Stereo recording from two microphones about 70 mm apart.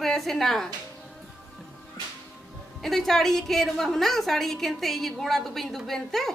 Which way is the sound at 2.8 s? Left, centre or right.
Centre.